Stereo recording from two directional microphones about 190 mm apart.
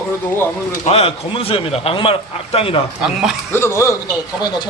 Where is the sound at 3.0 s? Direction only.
5° right (ahead or behind).